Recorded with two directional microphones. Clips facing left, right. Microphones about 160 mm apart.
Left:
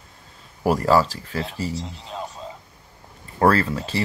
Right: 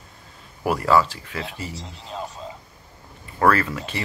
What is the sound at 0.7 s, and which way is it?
Speech, 35° left (ahead or behind).